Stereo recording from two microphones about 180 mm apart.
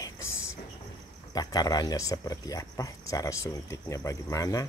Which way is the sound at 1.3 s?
20° left (ahead or behind).